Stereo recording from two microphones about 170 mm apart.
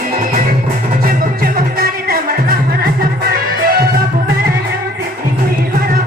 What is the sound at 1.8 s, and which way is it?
Music, 60° right (ahead or behind).